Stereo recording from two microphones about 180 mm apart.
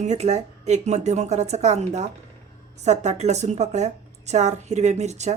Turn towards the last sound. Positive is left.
turn(degrees=-40)  # may be behind; listen again after turning